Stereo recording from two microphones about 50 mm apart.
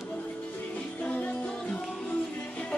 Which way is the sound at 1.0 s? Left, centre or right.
Left.